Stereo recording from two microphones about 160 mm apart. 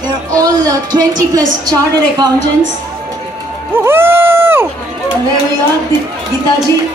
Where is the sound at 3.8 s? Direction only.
15° right (ahead or behind).